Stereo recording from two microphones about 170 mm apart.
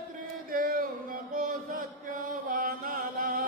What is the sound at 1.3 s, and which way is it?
Music, 55° right (ahead or behind).